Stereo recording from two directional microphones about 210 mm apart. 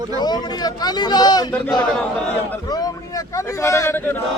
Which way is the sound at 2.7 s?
20° left (ahead or behind).